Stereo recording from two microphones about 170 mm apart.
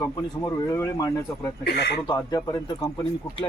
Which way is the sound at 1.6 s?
70° left (ahead or behind).